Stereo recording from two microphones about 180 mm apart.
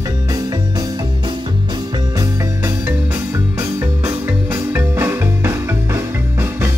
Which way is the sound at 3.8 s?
15° right (ahead or behind).